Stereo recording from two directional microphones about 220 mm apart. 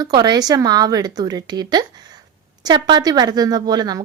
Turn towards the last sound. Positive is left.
turn(degrees=-20)  # may be behind; listen again after turning